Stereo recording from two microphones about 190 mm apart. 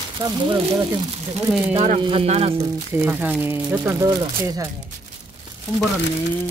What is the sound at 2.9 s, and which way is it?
Speech, 10° right (ahead or behind).